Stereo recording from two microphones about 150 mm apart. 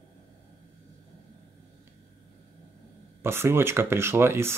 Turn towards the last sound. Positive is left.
turn(degrees=-15)  # may be behind; listen again after turning